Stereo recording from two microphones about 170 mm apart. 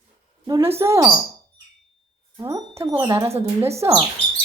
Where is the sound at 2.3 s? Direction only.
20° right (ahead or behind).